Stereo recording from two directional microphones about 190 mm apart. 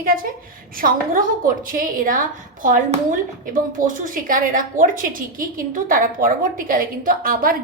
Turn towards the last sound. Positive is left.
turn(degrees=-50)  # may be behind; listen again after turning